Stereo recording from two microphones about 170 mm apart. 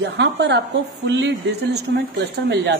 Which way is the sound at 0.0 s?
85° right.